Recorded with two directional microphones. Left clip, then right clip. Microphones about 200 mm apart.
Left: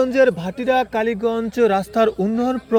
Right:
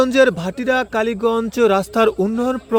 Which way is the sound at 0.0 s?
50° right (ahead or behind).